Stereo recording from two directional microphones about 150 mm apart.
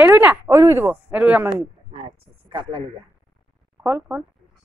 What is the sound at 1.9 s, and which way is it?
Speech, 35° right (ahead or behind).